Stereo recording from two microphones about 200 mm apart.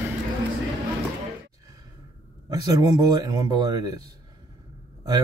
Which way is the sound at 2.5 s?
20° right (ahead or behind).